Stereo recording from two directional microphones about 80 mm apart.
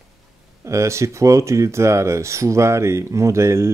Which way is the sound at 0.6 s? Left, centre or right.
Right.